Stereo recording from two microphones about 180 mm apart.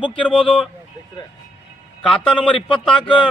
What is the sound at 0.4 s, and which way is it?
Speech, 30° left (ahead or behind).